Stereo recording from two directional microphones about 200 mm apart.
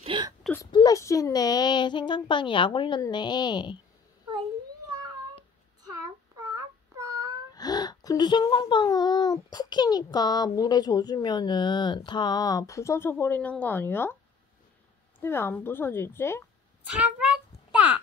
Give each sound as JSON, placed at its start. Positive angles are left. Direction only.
{"t": 0.0, "sound": "whimper", "side_deg": -25}
{"t": 0.6, "sound": "a child's voice", "side_deg": 20}
{"t": 5.9, "sound": "child singing", "side_deg": -15}
{"t": 7.5, "sound": "a child's voice", "side_deg": 20}
{"t": 15.1, "sound": "a woman's voice", "side_deg": 10}
{"t": 16.9, "sound": "a sound", "side_deg": -5}